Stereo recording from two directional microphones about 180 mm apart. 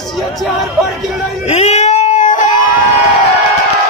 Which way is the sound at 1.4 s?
40° left (ahead or behind).